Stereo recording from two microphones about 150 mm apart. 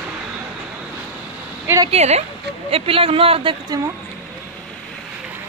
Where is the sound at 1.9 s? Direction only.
45° right (ahead or behind).